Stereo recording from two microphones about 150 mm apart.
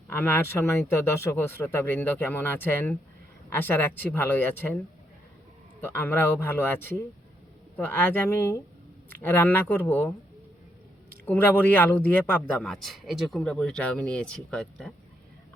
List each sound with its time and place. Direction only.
0.1 s speech: 15° left (ahead or behind)
5.8 s speech: 15° left (ahead or behind)
11.3 s speech: 15° left (ahead or behind)